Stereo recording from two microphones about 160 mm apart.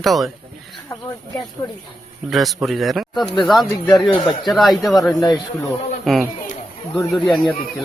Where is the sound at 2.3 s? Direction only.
Centre (ahead or behind).